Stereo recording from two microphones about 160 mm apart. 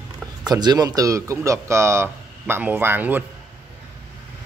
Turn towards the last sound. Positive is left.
turn(degrees=-10)  # may be behind; listen again after turning